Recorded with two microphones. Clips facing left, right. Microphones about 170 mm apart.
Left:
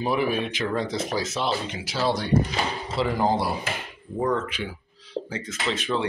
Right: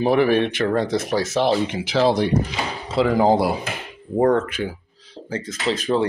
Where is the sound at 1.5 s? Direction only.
55° right (ahead or behind).